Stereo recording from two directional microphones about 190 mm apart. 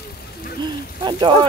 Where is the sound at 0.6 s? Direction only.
20° right (ahead or behind).